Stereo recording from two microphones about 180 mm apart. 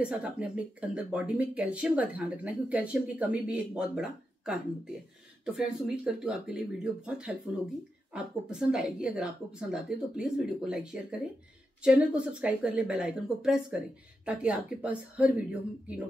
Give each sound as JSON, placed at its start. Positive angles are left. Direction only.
{"t": 0.0, "sound": "a woman's voice", "side_deg": -5}